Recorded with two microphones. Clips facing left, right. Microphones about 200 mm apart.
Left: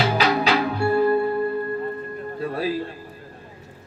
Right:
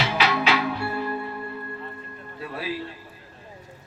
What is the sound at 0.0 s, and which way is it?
Music, 40° left (ahead or behind).